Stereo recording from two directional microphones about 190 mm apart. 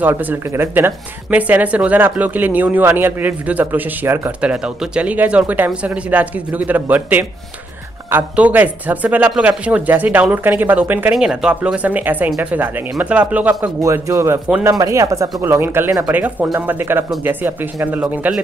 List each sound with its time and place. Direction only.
0.0 s speech: 10° right (ahead or behind)